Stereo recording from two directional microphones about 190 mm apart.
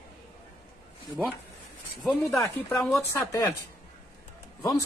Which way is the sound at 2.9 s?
15° left (ahead or behind).